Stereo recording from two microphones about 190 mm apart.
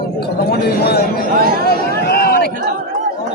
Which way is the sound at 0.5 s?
60° left (ahead or behind).